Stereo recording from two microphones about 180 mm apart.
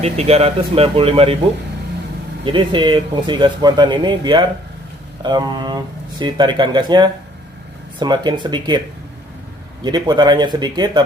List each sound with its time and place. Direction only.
0.0 s speech: 35° right (ahead or behind)
2.4 s speech: 30° right (ahead or behind)
9.8 s speech: 25° right (ahead or behind)